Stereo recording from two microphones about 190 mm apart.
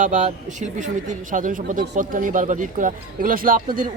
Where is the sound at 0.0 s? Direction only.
40° right (ahead or behind).